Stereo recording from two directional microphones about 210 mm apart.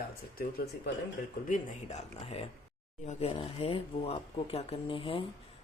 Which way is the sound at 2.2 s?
30° left (ahead or behind).